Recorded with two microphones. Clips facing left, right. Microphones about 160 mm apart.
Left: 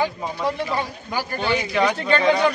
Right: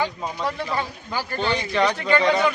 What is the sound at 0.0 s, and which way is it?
A man's voice, 15° left (ahead or behind).